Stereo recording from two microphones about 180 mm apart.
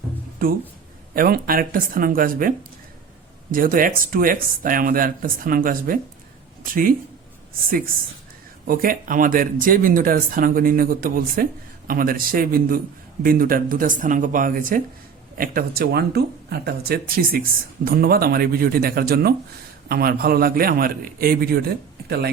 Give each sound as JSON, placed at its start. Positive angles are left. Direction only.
{"t": 1.1, "sound": "speech", "side_deg": -55}
{"t": 8.6, "sound": "speech", "side_deg": -55}